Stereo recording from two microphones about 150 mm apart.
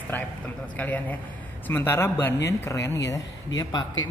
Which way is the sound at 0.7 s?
10° left (ahead or behind).